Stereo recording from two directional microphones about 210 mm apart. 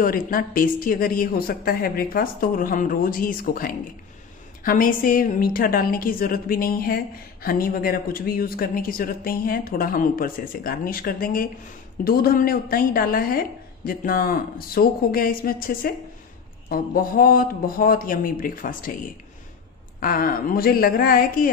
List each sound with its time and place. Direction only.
0.0 s a woman's voice: 45° left (ahead or behind)
20.0 s a woman's voice: 45° left (ahead or behind)